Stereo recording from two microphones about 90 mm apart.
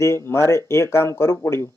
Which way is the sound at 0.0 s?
30° left (ahead or behind).